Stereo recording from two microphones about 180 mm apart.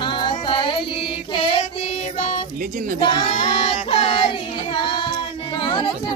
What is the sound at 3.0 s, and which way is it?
Child singing, 30° left (ahead or behind).